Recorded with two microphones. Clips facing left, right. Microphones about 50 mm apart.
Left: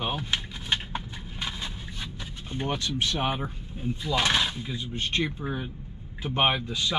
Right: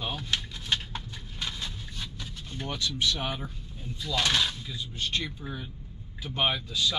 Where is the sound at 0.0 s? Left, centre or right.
Left.